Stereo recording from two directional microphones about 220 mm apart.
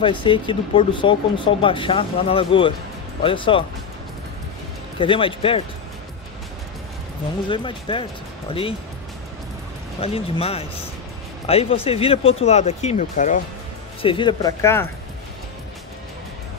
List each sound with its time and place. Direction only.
0.0 s speech: 25° left (ahead or behind)
4.9 s speech: 25° left (ahead or behind)
7.4 s speech: 20° left (ahead or behind)
9.9 s speech: 25° left (ahead or behind)
14.0 s speech: 20° left (ahead or behind)